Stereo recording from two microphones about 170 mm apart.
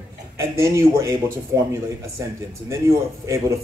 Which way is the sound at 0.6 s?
15° right (ahead or behind).